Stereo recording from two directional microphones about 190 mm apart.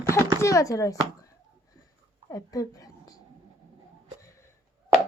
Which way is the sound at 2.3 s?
20° left (ahead or behind).